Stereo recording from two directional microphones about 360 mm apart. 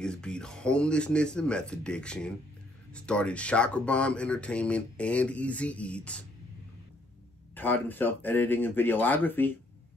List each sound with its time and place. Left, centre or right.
0.0 s speech: centre
7.5 s speech: centre